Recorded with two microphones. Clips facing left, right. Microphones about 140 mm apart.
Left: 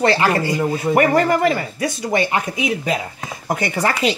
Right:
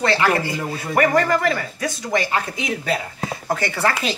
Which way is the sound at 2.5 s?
10° left (ahead or behind).